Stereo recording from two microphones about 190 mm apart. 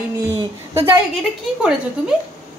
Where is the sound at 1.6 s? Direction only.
5° right (ahead or behind).